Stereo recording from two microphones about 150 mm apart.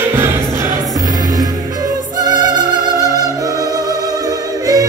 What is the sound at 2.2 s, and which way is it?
Music, 30° right (ahead or behind).